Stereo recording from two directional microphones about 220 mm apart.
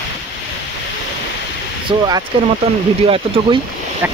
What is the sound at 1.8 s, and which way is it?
Speech, 15° right (ahead or behind).